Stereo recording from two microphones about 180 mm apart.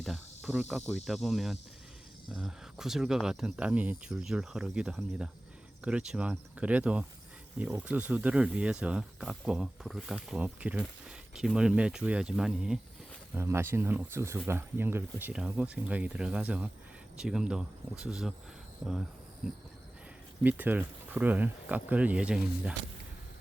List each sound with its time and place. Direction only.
0.0 s cricket: 5° right (ahead or behind)
1.0 s speech: centre (ahead or behind)
20.4 s speech: 10° right (ahead or behind)